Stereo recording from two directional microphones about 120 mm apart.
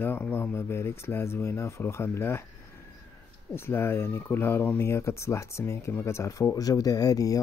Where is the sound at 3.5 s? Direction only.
20° left (ahead or behind).